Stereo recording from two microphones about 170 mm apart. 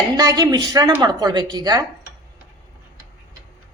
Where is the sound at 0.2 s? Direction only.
20° right (ahead or behind).